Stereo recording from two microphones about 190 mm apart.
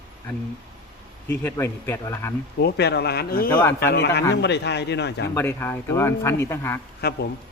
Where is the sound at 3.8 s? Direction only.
60° left (ahead or behind).